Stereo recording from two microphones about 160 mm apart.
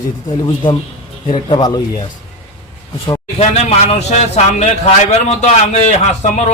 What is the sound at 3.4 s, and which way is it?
A man's voice, 40° left (ahead or behind).